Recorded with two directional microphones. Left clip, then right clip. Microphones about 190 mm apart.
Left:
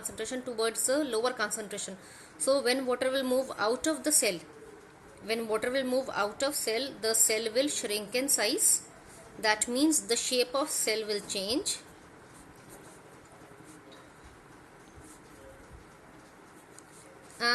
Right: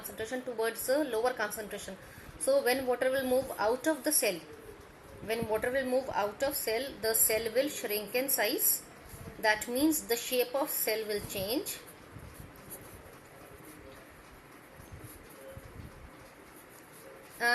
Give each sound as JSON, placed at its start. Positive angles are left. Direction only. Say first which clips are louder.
{"t": 0.2, "sound": "a woman's voice", "louder": "left 1 dB", "side_deg": 60}
{"t": 5.3, "sound": "a woman's voice", "louder": "left 1 dB", "side_deg": 55}